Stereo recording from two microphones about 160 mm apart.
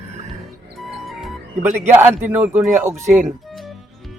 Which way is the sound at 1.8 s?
15° right (ahead or behind).